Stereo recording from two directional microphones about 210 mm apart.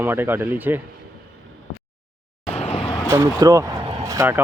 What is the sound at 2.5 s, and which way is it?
Vehicle, 30° left (ahead or behind).